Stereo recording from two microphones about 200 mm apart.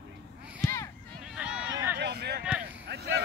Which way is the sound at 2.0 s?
55° right (ahead or behind).